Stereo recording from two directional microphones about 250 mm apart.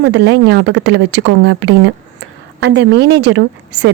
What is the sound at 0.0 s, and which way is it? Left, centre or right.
A woman's voice, right.